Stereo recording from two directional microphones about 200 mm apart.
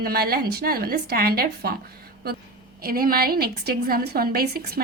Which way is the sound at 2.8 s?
45° right (ahead or behind).